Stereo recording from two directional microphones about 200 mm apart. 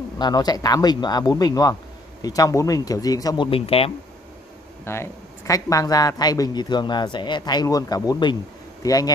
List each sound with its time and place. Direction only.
0.2 s speech: 20° left (ahead or behind)
4.8 s speech: 10° left (ahead or behind)